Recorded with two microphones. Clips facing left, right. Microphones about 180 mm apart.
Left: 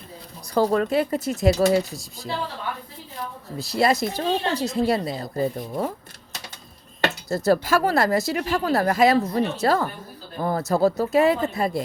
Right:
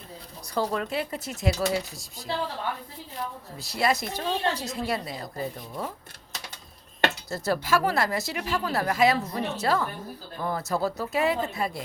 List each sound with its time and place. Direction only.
0.5 s speech: 45° left (ahead or behind)
3.6 s speech: 35° left (ahead or behind)
5.5 s speech: 45° left (ahead or behind)
7.3 s speech: 40° left (ahead or behind)